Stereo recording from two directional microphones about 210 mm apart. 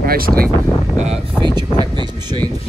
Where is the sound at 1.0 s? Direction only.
25° right (ahead or behind).